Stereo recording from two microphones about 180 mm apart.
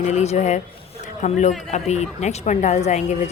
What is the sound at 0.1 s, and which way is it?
A woman's voice, 40° left (ahead or behind).